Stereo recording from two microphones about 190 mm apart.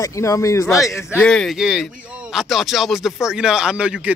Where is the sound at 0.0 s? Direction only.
15° left (ahead or behind).